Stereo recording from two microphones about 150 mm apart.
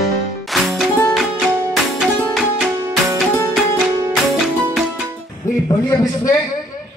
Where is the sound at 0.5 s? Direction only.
Centre (ahead or behind).